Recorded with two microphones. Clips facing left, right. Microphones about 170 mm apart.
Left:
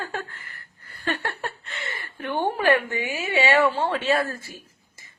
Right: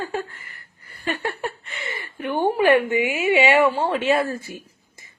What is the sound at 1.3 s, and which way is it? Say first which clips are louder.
A woman's voice: right 3 dB; 10° right (ahead or behind).